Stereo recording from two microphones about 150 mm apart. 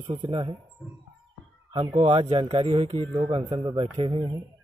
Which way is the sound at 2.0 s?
40° right (ahead or behind).